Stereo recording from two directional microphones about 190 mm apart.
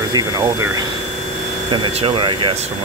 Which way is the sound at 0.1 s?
20° right (ahead or behind).